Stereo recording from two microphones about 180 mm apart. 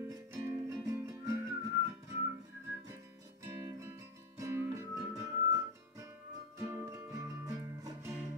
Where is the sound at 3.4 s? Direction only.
15° right (ahead or behind).